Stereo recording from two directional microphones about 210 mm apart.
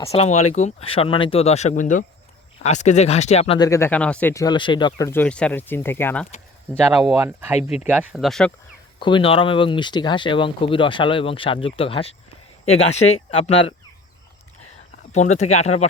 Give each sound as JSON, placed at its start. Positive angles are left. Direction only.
{"t": 0.1, "sound": "speech", "side_deg": 30}
{"t": 3.7, "sound": "speech", "side_deg": 10}
{"t": 7.2, "sound": "speech", "side_deg": -10}
{"t": 9.0, "sound": "speech", "side_deg": 25}
{"t": 15.1, "sound": "speech", "side_deg": 35}